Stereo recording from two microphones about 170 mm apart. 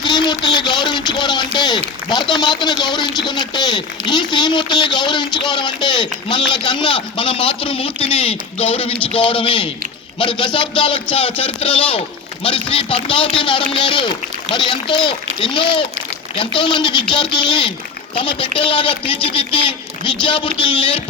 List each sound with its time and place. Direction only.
0.0 s speech: 25° left (ahead or behind)